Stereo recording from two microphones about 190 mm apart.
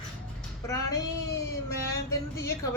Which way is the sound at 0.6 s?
15° left (ahead or behind).